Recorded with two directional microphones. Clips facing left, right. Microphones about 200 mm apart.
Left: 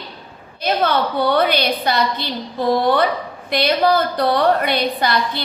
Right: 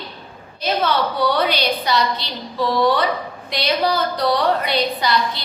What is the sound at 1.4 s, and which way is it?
Speech, 55° left (ahead or behind).